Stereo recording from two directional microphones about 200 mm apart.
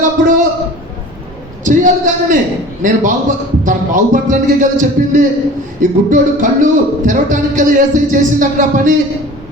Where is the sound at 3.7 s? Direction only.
40° right (ahead or behind).